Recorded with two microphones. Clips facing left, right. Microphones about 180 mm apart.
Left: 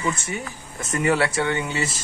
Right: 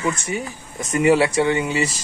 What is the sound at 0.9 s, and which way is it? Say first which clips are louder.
Speech: right 5 dB; 25° right (ahead or behind).